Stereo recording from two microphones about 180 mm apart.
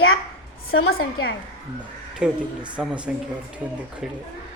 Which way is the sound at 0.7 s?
75° left (ahead or behind).